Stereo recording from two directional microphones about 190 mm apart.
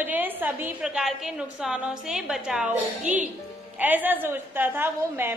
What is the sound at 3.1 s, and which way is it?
Speech, 40° right (ahead or behind).